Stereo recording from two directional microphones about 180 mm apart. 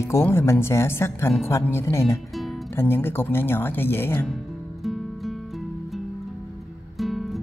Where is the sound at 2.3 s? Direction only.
Centre (ahead or behind).